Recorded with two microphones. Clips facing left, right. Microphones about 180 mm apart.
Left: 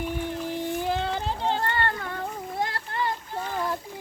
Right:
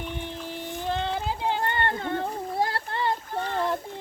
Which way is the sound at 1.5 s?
20° right (ahead or behind).